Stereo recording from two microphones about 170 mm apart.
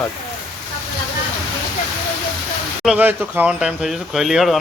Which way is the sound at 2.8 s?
10° right (ahead or behind).